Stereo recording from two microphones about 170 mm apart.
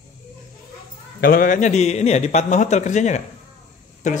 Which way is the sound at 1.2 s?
60° left (ahead or behind).